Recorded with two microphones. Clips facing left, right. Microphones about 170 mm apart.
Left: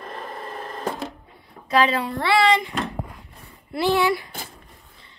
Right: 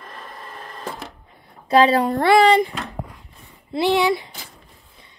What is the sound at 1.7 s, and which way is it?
Speech, 35° right (ahead or behind).